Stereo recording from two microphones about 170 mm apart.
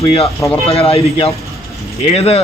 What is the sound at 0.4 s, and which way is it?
Speech, 20° left (ahead or behind).